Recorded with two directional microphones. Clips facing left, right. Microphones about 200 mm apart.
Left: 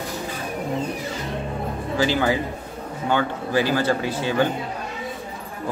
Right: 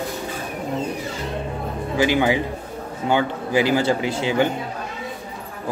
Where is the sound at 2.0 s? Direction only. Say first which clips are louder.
Right 2 dB; 15° right (ahead or behind).